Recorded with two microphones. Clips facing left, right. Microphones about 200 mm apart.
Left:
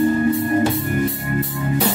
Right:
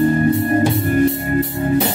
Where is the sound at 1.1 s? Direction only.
25° right (ahead or behind).